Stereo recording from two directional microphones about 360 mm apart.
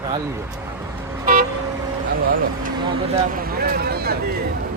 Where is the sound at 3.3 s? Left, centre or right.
Right.